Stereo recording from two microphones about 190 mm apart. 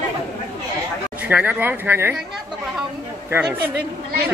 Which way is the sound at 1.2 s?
10° right (ahead or behind).